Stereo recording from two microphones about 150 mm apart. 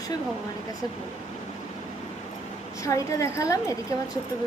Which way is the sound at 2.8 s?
20° left (ahead or behind).